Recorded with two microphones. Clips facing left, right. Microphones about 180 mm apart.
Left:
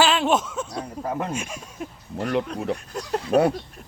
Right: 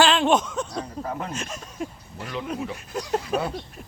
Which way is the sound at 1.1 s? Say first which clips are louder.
Left 6 dB; 15° left (ahead or behind).